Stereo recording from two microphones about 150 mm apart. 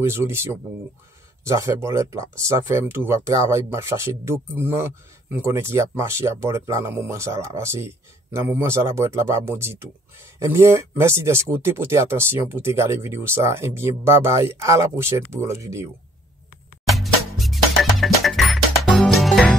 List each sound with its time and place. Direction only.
0.0 s speech: 15° right (ahead or behind)
16.8 s music: centre (ahead or behind)